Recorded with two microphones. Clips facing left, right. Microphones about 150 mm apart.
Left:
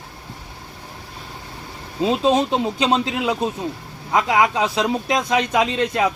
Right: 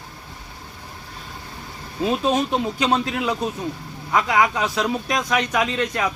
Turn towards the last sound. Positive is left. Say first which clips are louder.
# left 3 dB
turn(degrees=25)  # may be behind; listen again after turning